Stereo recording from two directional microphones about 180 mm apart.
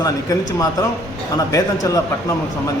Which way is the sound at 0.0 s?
20° left (ahead or behind).